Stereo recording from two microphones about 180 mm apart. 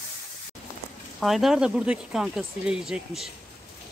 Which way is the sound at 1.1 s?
Centre (ahead or behind).